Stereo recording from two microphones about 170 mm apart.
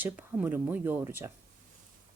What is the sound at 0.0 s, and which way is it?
Speech, 10° right (ahead or behind).